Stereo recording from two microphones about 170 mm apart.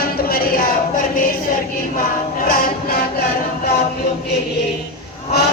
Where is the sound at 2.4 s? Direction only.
60° left (ahead or behind).